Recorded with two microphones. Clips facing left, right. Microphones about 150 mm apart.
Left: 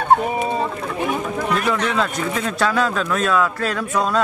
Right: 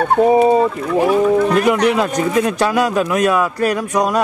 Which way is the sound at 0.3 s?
35° right (ahead or behind).